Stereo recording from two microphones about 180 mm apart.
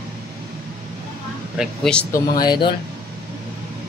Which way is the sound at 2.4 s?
25° left (ahead or behind).